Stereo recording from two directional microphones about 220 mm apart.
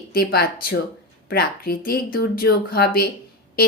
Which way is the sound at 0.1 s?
45° left (ahead or behind).